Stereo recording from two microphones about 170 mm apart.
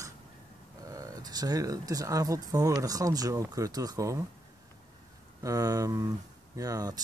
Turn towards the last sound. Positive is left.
turn(degrees=-20)  # may be behind; listen again after turning